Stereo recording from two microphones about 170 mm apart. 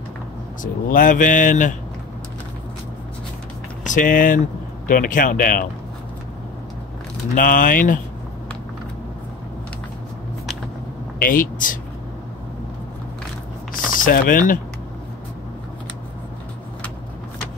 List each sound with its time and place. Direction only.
0.6 s speech: 50° left (ahead or behind)
3.8 s speech: 50° left (ahead or behind)
7.3 s speech: 55° left (ahead or behind)
11.1 s speech: 55° left (ahead or behind)
13.9 s speech: 55° left (ahead or behind)